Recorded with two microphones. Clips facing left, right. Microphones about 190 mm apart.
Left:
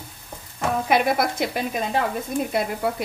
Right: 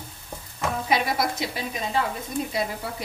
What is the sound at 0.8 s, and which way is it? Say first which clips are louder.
Stir: left 4 dB; 55° left (ahead or behind).